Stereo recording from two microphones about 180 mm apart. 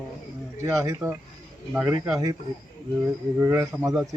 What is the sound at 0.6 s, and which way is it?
Speech, 15° right (ahead or behind).